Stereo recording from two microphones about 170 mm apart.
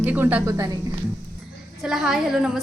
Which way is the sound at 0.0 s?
10° right (ahead or behind).